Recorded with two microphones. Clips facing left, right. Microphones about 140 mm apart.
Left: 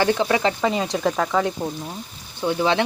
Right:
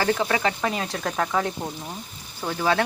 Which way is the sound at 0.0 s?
20° left (ahead or behind).